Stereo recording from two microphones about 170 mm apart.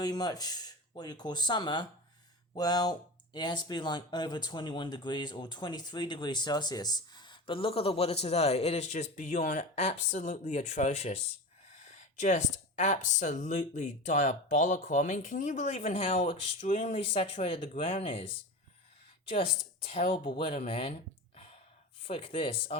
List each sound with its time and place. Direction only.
0.0 s speech: 25° left (ahead or behind)
16.6 s speech: 45° left (ahead or behind)
16.9 s speech: 35° left (ahead or behind)
19.9 s speech: 35° left (ahead or behind)